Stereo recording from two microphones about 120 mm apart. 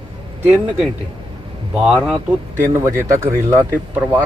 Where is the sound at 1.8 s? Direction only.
5° right (ahead or behind).